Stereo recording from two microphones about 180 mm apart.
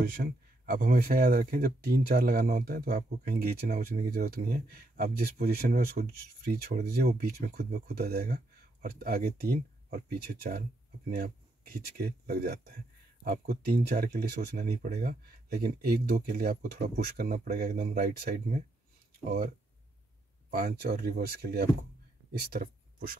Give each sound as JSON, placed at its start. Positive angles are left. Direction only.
{"t": 0.2, "sound": "speech", "side_deg": -55}
{"t": 20.4, "sound": "speech", "side_deg": -65}